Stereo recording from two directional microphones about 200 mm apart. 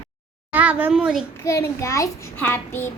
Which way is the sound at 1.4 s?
15° left (ahead or behind).